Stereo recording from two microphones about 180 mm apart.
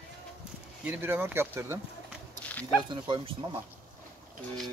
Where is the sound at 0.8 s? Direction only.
10° right (ahead or behind).